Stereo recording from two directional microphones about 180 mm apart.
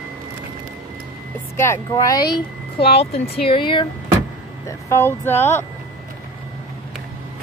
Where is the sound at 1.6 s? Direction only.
15° left (ahead or behind).